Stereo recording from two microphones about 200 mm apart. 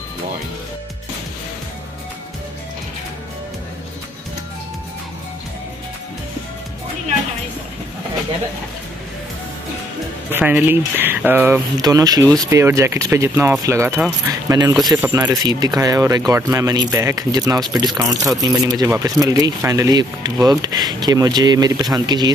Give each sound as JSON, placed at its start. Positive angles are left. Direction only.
{"t": 10.3, "sound": "speech", "side_deg": -10}